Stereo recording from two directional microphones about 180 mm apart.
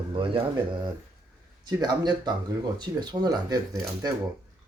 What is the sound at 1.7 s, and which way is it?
Speech, 25° right (ahead or behind).